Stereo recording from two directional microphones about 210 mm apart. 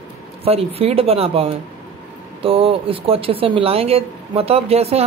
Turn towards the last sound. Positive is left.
turn(degrees=-30)  # may be behind; listen again after turning